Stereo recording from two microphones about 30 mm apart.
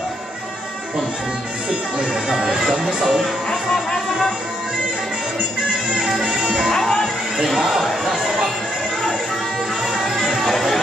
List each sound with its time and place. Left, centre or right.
2.2 s speech: centre
2.8 s speech: right
6.2 s music: right
6.7 s music: centre
7.4 s speech: centre